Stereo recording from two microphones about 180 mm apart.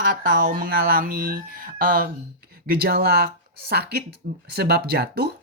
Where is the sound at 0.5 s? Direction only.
55° right (ahead or behind).